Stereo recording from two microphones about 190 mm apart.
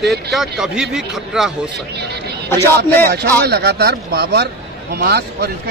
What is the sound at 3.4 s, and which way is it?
A man's voice, 60° right (ahead or behind).